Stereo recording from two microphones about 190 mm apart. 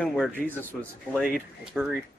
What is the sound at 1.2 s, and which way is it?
Speech, 5° right (ahead or behind).